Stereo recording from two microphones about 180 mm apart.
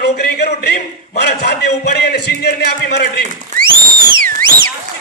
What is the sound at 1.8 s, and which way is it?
A man's voice, 65° left (ahead or behind).